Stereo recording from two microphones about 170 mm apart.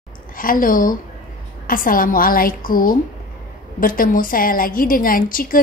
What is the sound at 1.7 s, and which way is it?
A woman's voice, 55° left (ahead or behind).